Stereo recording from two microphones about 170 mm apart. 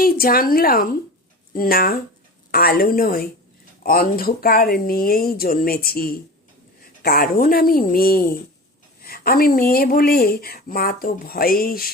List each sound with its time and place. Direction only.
0.0 s speech: 60° left (ahead or behind)